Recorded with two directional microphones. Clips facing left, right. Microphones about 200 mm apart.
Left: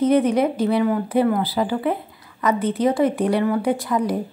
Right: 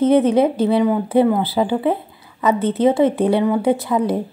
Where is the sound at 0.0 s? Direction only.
25° right (ahead or behind).